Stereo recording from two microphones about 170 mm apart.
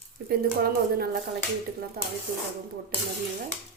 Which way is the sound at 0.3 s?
65° right (ahead or behind).